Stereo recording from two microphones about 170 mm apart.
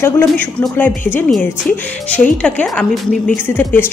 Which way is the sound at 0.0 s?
10° left (ahead or behind).